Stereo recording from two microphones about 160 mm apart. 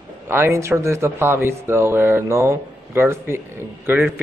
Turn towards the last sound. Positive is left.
turn(degrees=-10)  # may be behind; listen again after turning